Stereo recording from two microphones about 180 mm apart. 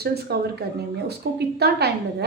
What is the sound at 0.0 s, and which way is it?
A woman's voice, 60° right (ahead or behind).